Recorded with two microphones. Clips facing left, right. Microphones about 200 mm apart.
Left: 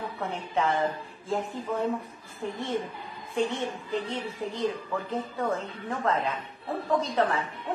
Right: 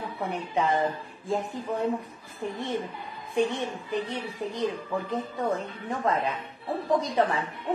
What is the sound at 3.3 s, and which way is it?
A woman's voice, 15° right (ahead or behind).